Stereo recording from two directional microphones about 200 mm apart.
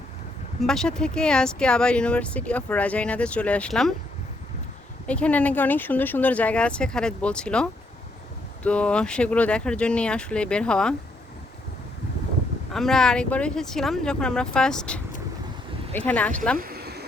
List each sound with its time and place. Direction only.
0.6 s speech: centre (ahead or behind)
5.0 s speech: 5° left (ahead or behind)
12.7 s speech: centre (ahead or behind)
16.6 s a sound: 50° right (ahead or behind)